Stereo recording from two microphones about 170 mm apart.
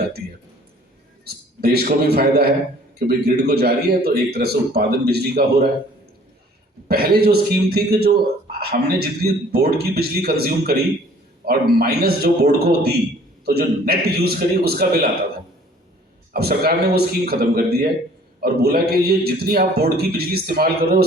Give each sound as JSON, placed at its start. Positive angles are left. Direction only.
{"t": 1.2, "sound": "a man's voice", "side_deg": -65}
{"t": 6.8, "sound": "a man's voice", "side_deg": -65}
{"t": 16.3, "sound": "a man's voice", "side_deg": -65}